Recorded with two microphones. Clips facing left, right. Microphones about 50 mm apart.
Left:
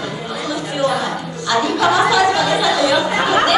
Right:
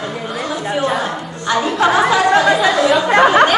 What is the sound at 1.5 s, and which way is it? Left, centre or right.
Speech, right.